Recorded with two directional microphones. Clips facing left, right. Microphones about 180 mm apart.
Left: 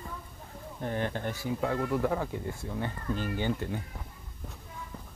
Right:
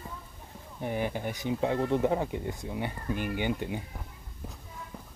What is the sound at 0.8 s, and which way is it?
Speech, 10° right (ahead or behind).